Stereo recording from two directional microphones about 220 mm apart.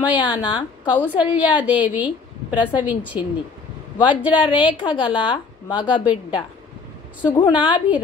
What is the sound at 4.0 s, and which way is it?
A woman's voice, 20° left (ahead or behind).